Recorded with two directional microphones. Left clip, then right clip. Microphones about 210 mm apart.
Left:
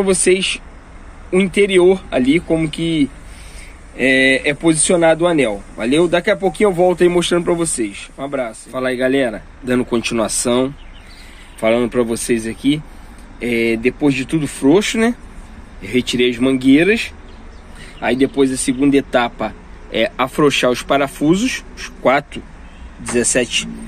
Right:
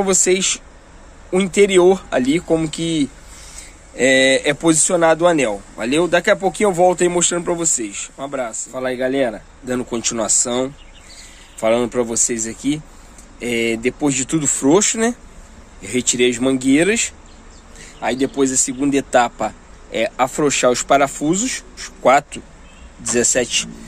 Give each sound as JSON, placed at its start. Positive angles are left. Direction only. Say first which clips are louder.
{"t": 0.0, "sound": "speech", "louder": "left 2 dB", "side_deg": -15}
{"t": 17.7, "sound": "a man's voice", "louder": "left 4 dB", "side_deg": 0}
{"t": 23.0, "sound": "speech", "louder": "left 1 dB", "side_deg": -15}